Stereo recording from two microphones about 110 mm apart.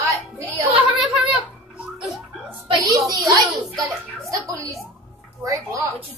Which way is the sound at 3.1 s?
30° right (ahead or behind).